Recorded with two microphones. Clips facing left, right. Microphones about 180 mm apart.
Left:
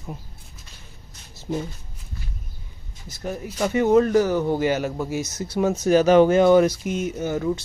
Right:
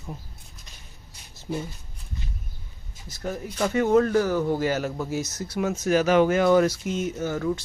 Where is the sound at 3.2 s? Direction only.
10° left (ahead or behind).